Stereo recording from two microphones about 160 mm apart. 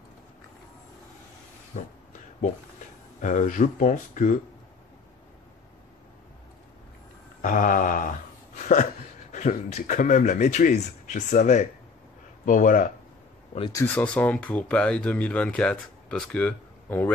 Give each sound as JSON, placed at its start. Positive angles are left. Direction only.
{"t": 1.7, "sound": "mantra", "side_deg": 55}
{"t": 3.2, "sound": "a man's voice", "side_deg": 50}
{"t": 7.4, "sound": "mantra", "side_deg": 55}
{"t": 9.3, "sound": "a man's voice", "side_deg": 45}
{"t": 13.7, "sound": "speech", "side_deg": 15}